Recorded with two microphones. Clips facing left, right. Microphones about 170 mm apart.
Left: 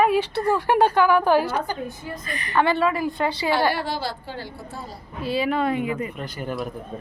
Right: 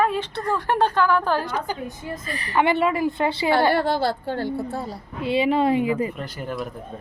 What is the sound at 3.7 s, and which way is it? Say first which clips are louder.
A woman's voice: right 5 dB; 55° right (ahead or behind).